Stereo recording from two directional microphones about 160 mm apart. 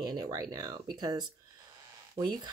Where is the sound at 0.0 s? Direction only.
25° right (ahead or behind).